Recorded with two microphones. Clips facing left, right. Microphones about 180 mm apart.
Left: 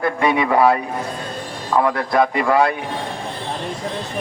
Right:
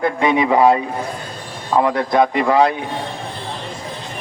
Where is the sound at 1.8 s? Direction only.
20° right (ahead or behind).